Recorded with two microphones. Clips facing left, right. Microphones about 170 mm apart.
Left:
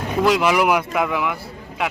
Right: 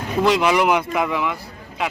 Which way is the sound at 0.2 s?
Centre (ahead or behind).